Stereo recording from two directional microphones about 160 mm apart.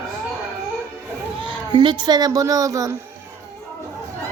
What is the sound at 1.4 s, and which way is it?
Speech, 30° right (ahead or behind).